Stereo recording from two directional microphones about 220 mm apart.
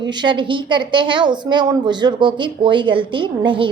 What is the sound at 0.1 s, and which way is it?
A woman's voice, 20° right (ahead or behind).